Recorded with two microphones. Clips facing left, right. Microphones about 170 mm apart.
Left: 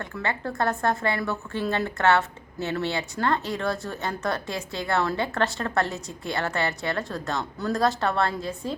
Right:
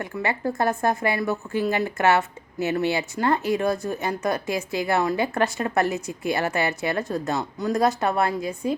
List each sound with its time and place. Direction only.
0.0 s a woman's voice: 15° right (ahead or behind)